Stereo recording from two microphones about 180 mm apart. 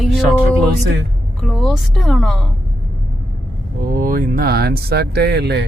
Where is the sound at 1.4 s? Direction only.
Centre (ahead or behind).